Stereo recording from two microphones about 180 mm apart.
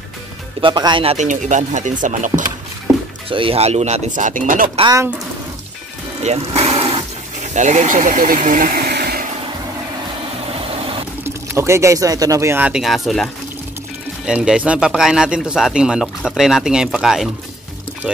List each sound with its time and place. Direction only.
0.6 s speech: 25° right (ahead or behind)
1.1 s speech: 45° right (ahead or behind)
3.3 s speech: 30° right (ahead or behind); by 4.6 s 45° right (ahead or behind)
4.7 s speech: 25° right (ahead or behind)
6.2 s speech: 35° right (ahead or behind); by 9.2 s 60° right (ahead or behind)
11.2 s a man's voice: 15° right (ahead or behind)